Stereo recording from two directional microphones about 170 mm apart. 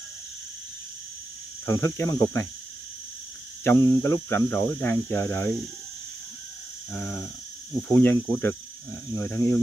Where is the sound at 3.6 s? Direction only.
15° left (ahead or behind).